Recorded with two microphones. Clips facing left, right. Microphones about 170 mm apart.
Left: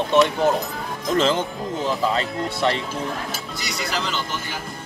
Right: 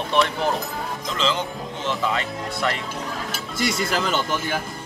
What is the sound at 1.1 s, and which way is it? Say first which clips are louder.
Speech: left 6 dB; 45° left (ahead or behind).